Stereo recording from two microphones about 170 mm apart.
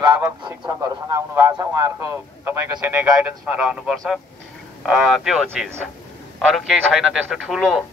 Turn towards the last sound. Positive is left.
turn(degrees=0)  # may be behind; listen again after turning